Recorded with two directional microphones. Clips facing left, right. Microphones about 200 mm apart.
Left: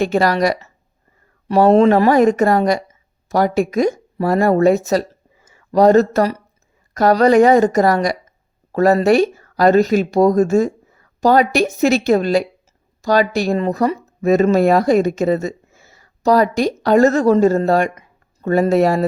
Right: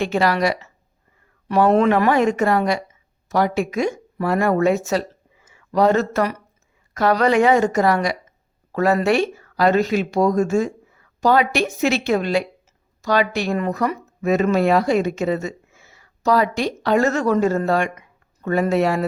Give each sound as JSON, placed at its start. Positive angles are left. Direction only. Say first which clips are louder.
{"t": 0.0, "sound": "speech", "louder": "left 3 dB", "side_deg": 40}
{"t": 4.9, "sound": "a sound", "louder": "left 4 dB", "side_deg": 40}
{"t": 6.9, "sound": "speech", "louder": "left 5 dB", "side_deg": 40}